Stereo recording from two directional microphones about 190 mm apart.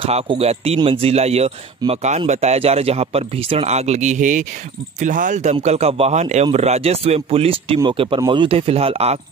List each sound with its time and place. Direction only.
0.0 s speech: 30° right (ahead or behind)